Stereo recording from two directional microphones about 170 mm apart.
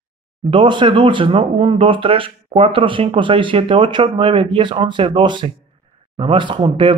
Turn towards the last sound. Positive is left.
turn(degrees=-30)  # may be behind; listen again after turning